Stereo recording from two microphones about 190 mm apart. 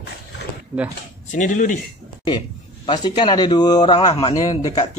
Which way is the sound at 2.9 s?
20° left (ahead or behind).